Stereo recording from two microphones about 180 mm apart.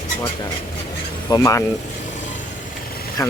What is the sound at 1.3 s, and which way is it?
Speech, 20° left (ahead or behind).